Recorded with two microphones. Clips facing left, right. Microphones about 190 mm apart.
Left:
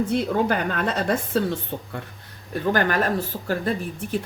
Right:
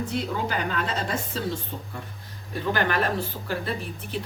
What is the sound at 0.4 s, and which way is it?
Speech, 55° left (ahead or behind).